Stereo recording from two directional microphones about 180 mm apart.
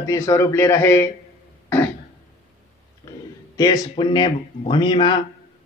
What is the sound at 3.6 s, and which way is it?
Speech, 25° left (ahead or behind).